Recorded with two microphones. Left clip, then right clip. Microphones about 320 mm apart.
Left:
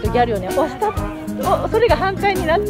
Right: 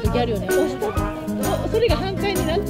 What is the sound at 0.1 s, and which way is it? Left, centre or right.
Speech, left.